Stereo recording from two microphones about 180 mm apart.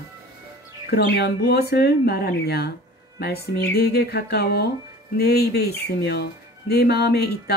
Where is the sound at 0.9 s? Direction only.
65° left (ahead or behind).